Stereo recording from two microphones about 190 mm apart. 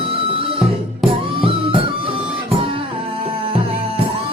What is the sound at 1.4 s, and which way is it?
Music, 30° right (ahead or behind).